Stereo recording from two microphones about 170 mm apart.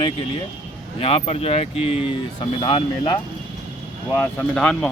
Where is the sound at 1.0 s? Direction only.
35° left (ahead or behind).